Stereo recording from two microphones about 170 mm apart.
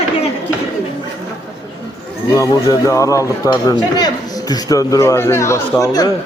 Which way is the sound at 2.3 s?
20° left (ahead or behind).